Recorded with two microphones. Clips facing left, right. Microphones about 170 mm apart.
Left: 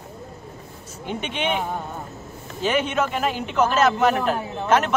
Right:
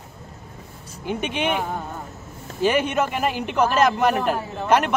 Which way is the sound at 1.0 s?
10° right (ahead or behind).